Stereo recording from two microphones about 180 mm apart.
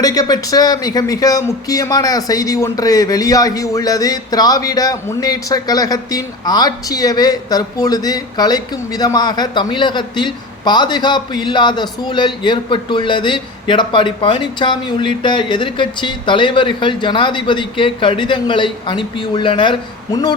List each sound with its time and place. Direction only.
0.0 s a man's voice: 20° left (ahead or behind)